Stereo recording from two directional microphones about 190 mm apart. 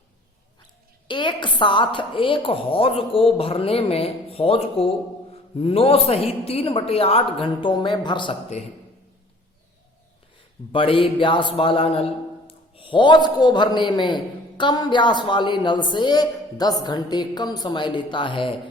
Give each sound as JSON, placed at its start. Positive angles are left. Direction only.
{"t": 1.0, "sound": "a woman's voice", "side_deg": 25}
{"t": 10.7, "sound": "a woman's voice", "side_deg": 25}